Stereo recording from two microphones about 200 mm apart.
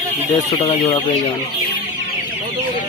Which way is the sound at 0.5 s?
25° left (ahead or behind).